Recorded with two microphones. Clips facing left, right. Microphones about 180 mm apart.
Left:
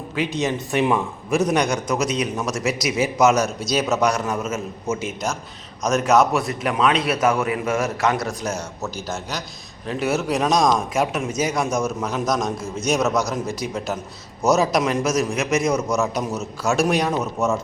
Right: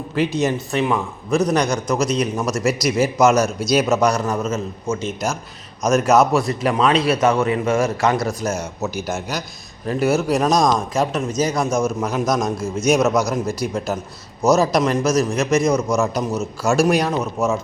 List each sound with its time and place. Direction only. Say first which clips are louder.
0.1 s speech: right 4 dB; 5° right (ahead or behind)
0.7 s a man's voice: even; 15° left (ahead or behind)
1.3 s a man's voice: right 2 dB; centre (ahead or behind)
5.8 s a man's voice: right 2 dB; 5° right (ahead or behind)
9.8 s a man's voice: right 4 dB; centre (ahead or behind)